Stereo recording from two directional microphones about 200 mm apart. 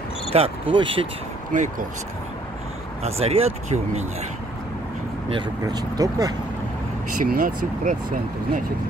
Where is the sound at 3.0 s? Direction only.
30° right (ahead or behind).